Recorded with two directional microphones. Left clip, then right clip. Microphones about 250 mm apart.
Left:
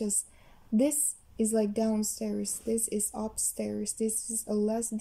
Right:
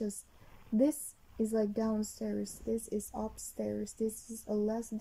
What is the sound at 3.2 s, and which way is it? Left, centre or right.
Speech, left.